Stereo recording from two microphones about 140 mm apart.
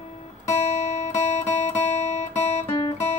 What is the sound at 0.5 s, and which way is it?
Guitar, 50° left (ahead or behind).